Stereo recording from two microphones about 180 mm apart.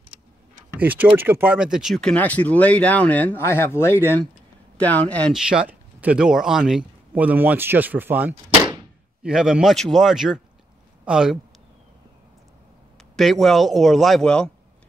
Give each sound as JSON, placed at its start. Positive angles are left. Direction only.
{"t": 0.7, "sound": "speech", "side_deg": -10}
{"t": 5.5, "sound": "speech", "side_deg": -5}
{"t": 13.1, "sound": "speech", "side_deg": 0}